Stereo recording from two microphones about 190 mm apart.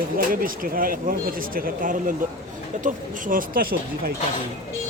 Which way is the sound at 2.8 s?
45° right (ahead or behind).